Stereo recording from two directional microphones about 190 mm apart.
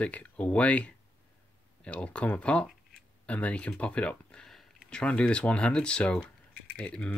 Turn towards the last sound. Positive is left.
turn(degrees=5)  # may be behind; listen again after turning